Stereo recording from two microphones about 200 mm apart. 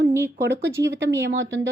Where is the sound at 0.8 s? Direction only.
60° right (ahead or behind).